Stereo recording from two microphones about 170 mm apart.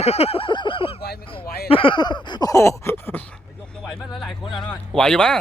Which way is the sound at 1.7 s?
30° left (ahead or behind).